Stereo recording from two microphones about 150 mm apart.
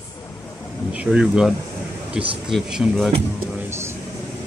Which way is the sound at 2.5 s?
Centre (ahead or behind).